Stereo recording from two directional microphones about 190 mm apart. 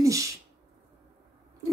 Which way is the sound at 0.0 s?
15° right (ahead or behind).